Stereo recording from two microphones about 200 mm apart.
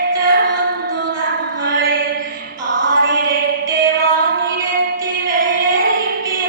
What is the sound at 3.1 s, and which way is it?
Music, 45° right (ahead or behind).